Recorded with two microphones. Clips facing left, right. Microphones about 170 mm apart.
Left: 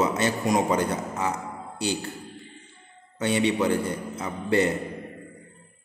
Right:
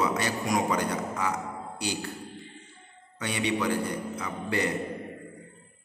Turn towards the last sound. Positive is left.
turn(degrees=25)  # may be behind; listen again after turning